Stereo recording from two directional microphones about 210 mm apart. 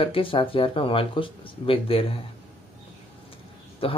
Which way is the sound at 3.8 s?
25° left (ahead or behind).